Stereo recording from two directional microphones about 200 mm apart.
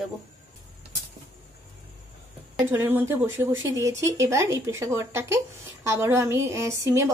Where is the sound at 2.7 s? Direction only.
10° right (ahead or behind).